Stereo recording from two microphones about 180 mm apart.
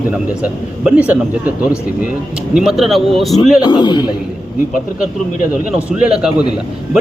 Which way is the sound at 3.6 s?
25° left (ahead or behind).